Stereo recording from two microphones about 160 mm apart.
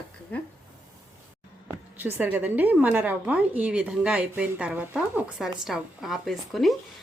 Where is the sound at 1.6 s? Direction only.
10° right (ahead or behind).